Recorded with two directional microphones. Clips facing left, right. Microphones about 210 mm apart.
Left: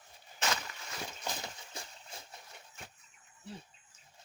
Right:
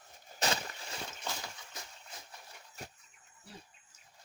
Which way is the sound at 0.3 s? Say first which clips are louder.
Right 2 dB; 35° right (ahead or behind).